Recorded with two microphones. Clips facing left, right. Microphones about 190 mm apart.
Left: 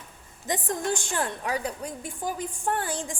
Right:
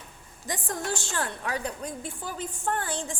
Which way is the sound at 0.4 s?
20° left (ahead or behind).